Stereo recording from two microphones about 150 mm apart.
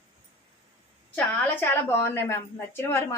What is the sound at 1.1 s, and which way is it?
A woman's voice, 15° left (ahead or behind).